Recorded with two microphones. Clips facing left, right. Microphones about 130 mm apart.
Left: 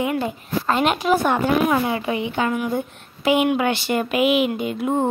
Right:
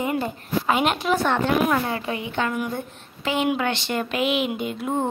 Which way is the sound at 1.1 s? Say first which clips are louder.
Left 2 dB; 10° left (ahead or behind).